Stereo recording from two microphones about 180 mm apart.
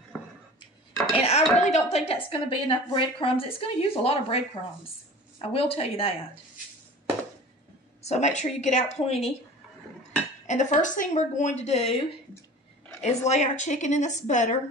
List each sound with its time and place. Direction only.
0.6 s dishes: 20° left (ahead or behind)
1.2 s a woman's voice: 40° left (ahead or behind)
5.4 s a woman's voice: 35° left (ahead or behind)
8.0 s a woman's voice: 40° left (ahead or behind)
10.4 s a woman's voice: 45° left (ahead or behind)
13.0 s a woman's voice: 40° left (ahead or behind)